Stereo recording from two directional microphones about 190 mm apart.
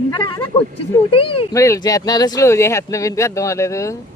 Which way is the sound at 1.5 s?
15° left (ahead or behind).